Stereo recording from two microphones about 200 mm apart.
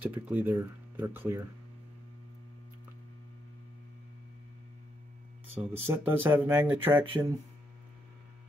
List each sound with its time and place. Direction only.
0.0 s speech: 5° right (ahead or behind)
5.7 s speech: 10° right (ahead or behind)
6.9 s speech: 20° right (ahead or behind)